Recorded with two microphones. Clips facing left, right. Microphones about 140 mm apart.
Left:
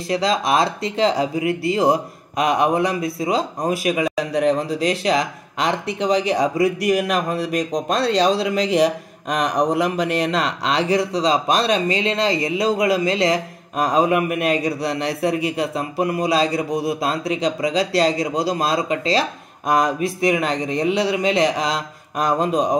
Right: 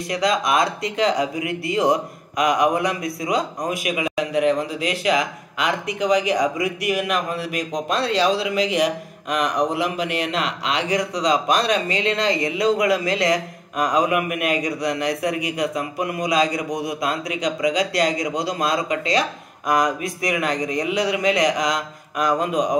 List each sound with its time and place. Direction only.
0.1 s speech: 30° left (ahead or behind)